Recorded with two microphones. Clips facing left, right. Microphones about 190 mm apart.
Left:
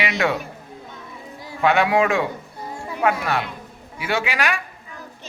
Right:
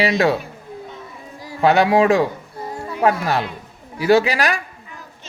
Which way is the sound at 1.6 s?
35° right (ahead or behind).